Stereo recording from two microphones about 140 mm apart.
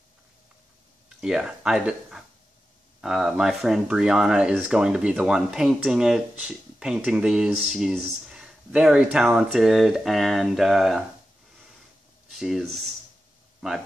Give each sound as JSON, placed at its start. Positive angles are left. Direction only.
{"t": 1.0, "sound": "speech", "side_deg": -5}
{"t": 12.3, "sound": "speech", "side_deg": 0}